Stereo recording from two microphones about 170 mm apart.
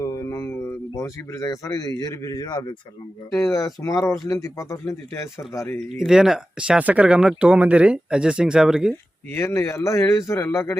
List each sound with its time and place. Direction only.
0.0 s a sound: 20° left (ahead or behind)
2.0 s speech: 25° left (ahead or behind)
6.0 s speech: 5° right (ahead or behind)
9.3 s a man's voice: 15° left (ahead or behind)